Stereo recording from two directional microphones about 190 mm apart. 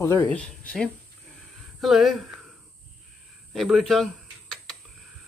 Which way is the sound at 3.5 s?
Centre (ahead or behind).